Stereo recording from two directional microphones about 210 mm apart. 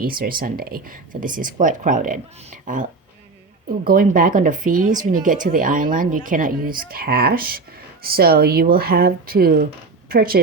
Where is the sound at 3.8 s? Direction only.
40° right (ahead or behind).